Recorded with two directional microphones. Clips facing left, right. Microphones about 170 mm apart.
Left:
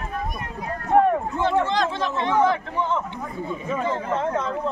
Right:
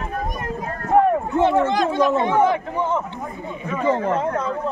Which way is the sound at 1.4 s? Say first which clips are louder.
Right 6 dB; 60° right (ahead or behind).